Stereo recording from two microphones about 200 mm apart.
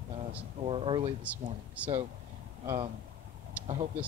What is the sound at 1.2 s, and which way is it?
Speech, 5° right (ahead or behind).